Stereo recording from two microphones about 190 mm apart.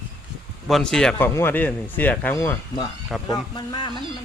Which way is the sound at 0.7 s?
5° left (ahead or behind).